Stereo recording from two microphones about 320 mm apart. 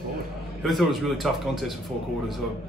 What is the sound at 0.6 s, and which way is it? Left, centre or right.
A man's voice, centre.